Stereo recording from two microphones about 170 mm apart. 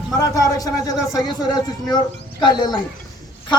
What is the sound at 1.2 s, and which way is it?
Speech, 20° left (ahead or behind).